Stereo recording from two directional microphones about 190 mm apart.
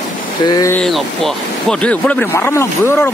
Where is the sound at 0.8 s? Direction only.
Centre (ahead or behind).